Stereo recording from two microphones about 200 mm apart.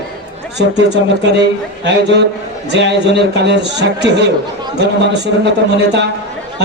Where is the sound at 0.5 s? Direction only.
60° right (ahead or behind).